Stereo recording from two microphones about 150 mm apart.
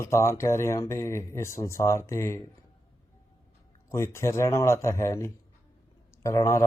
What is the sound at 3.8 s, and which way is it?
Speech, 20° left (ahead or behind).